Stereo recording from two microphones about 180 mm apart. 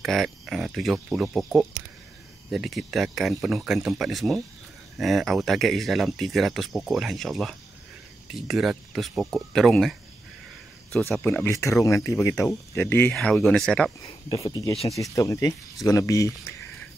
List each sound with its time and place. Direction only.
0.0 s speech: centre (ahead or behind)
11.1 s speech: 5° left (ahead or behind)
11.5 s speech: 15° left (ahead or behind)
14.3 s speech: 20° left (ahead or behind)